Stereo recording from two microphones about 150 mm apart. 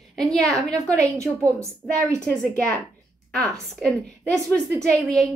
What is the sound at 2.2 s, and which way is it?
Speech, 10° left (ahead or behind).